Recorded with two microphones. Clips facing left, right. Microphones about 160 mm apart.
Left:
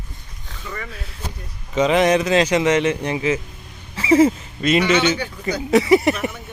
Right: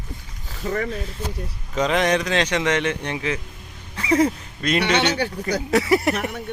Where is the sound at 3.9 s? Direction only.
5° left (ahead or behind).